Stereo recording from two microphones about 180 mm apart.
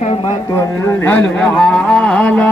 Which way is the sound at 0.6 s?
15° left (ahead or behind).